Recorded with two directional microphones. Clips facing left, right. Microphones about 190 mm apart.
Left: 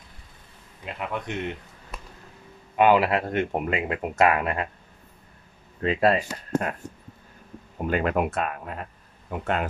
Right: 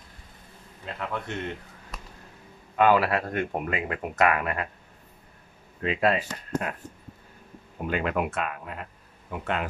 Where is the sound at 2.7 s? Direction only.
20° left (ahead or behind).